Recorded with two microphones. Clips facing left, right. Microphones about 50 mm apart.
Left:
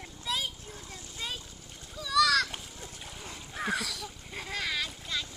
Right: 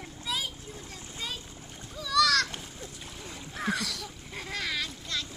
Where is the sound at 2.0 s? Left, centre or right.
Centre.